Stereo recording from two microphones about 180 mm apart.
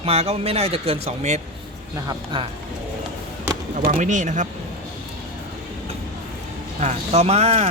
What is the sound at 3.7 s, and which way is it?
Speech, 45° right (ahead or behind).